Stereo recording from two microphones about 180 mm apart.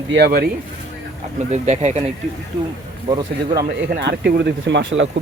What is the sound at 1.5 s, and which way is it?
Speech, 40° right (ahead or behind).